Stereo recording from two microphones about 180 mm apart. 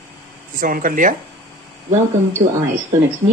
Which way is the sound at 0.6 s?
50° right (ahead or behind).